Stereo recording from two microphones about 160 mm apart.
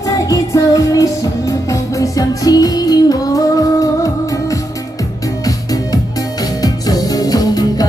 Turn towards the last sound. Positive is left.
turn(degrees=25)  # may be behind; listen again after turning